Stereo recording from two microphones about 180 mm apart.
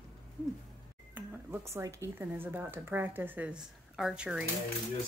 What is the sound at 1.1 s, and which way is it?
Speech, 15° right (ahead or behind).